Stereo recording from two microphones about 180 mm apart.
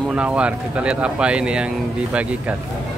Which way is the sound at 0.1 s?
5° right (ahead or behind).